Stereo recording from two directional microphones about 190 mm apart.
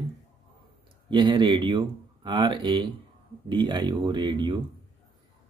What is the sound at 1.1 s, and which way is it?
Speech, 25° right (ahead or behind).